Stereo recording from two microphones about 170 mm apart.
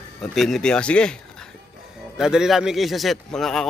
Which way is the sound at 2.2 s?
5° right (ahead or behind).